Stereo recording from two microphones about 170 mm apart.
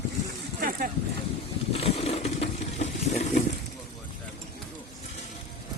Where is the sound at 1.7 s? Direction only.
35° left (ahead or behind).